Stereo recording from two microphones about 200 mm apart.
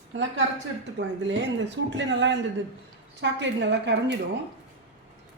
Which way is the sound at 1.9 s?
65° right (ahead or behind).